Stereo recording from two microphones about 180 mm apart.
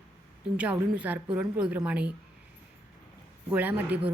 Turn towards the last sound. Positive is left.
turn(degrees=-10)  # may be behind; listen again after turning